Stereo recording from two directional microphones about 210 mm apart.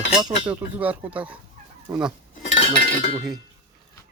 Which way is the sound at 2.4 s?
30° left (ahead or behind).